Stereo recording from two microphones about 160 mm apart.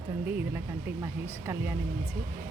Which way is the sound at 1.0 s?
15° right (ahead or behind).